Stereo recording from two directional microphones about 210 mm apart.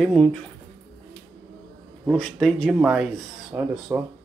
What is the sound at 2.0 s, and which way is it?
Speech, centre (ahead or behind).